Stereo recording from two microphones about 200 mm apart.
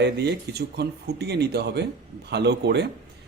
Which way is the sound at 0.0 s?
55° right (ahead or behind).